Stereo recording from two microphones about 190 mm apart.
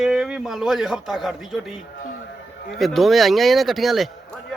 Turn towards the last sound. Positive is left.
turn(degrees=0)  # may be behind; listen again after turning